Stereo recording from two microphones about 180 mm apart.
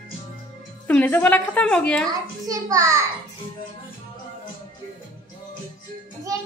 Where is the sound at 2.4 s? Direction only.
20° right (ahead or behind).